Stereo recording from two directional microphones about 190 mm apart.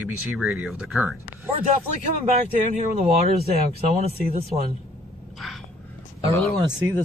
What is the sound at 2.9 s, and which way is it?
Speech, 30° right (ahead or behind).